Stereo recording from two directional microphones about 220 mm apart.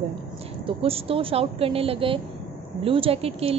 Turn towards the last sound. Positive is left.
turn(degrees=-25)  # may be behind; listen again after turning